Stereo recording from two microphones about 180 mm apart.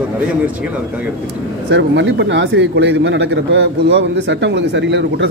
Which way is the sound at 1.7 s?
80° right.